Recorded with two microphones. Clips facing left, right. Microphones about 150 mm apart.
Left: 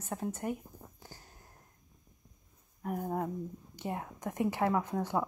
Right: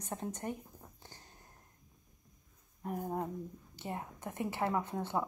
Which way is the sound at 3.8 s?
15° left (ahead or behind).